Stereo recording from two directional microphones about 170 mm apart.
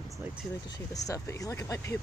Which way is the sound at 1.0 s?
20° left (ahead or behind).